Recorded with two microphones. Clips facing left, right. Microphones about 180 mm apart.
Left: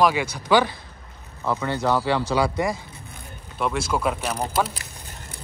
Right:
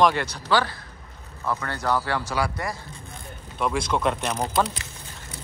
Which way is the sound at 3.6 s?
5° left (ahead or behind).